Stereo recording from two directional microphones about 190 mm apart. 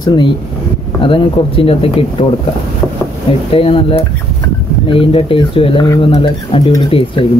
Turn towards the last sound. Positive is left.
turn(degrees=30)  # may be behind; listen again after turning